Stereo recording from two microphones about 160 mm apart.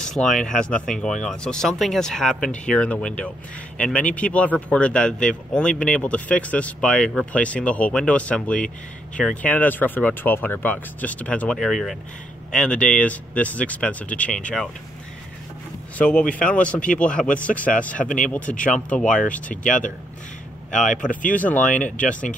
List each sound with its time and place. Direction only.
0.0 s a man's voice: 5° left (ahead or behind)
16.0 s a man's voice: 5° left (ahead or behind)
18.0 s speech: 55° left (ahead or behind)
19.1 s a man's voice: 10° left (ahead or behind)
21.1 s speech: 55° left (ahead or behind)
21.9 s a man's voice: 5° left (ahead or behind)